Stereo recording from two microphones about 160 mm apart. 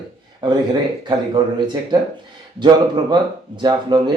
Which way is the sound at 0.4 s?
30° right (ahead or behind).